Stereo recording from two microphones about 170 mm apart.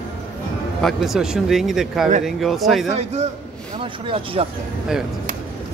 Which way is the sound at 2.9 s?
40° right (ahead or behind).